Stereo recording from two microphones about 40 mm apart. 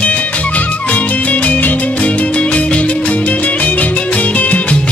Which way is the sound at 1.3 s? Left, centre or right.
Left.